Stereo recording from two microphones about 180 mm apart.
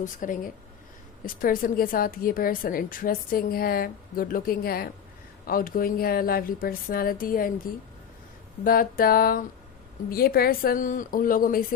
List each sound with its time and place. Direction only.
0.0 s a woman's voice: 45° left (ahead or behind)
8.6 s a woman's voice: 50° left (ahead or behind)